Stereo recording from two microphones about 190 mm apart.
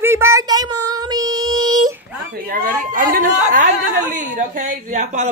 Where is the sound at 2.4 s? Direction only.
45° right (ahead or behind).